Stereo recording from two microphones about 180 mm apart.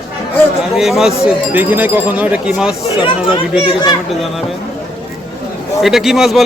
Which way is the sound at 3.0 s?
30° left (ahead or behind).